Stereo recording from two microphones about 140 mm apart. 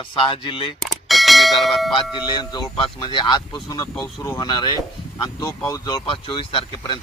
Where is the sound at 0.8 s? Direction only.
Centre (ahead or behind).